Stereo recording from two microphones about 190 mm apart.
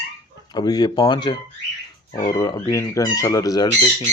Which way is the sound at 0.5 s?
20° left (ahead or behind).